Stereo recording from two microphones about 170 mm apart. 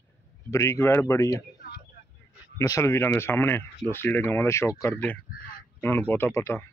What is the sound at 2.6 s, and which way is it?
Speech, 15° left (ahead or behind).